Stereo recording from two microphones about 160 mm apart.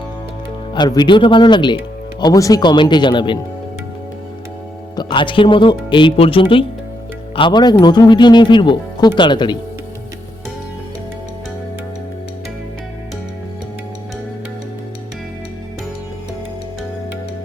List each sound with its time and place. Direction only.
0.7 s speech: 25° left (ahead or behind)
4.9 s speech: 30° left (ahead or behind)